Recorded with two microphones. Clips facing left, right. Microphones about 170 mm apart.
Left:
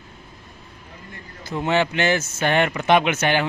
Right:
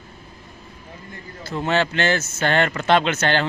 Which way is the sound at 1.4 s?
15° left (ahead or behind).